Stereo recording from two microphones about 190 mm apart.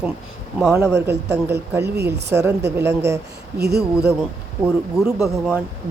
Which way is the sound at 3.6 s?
55° right (ahead or behind).